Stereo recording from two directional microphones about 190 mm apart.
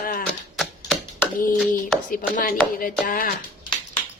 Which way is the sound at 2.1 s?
45° left (ahead or behind).